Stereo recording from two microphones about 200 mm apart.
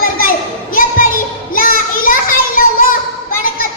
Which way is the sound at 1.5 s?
45° left (ahead or behind).